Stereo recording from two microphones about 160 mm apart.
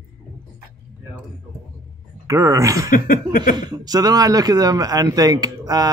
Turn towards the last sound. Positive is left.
turn(degrees=-25)  # may be behind; listen again after turning